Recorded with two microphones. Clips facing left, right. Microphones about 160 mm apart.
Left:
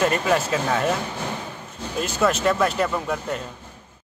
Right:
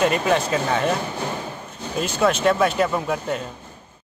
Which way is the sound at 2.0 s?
Centre (ahead or behind).